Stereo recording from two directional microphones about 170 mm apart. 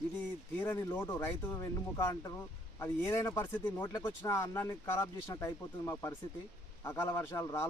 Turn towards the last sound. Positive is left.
turn(degrees=15)  # may be behind; listen again after turning